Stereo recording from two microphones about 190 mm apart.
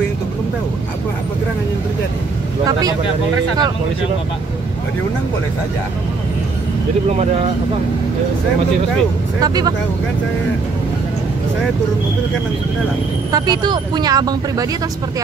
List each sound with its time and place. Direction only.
9.4 s speech: 20° right (ahead or behind)
13.3 s speech: 20° right (ahead or behind)